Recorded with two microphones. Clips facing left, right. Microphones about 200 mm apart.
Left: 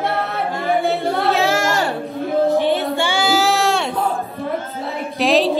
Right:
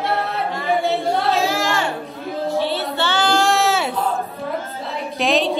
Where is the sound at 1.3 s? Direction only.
70° left (ahead or behind).